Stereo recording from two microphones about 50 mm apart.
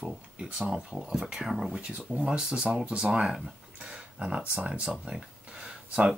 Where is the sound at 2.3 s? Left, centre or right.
Centre.